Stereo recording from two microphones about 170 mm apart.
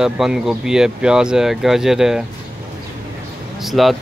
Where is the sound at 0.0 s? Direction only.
5° right (ahead or behind).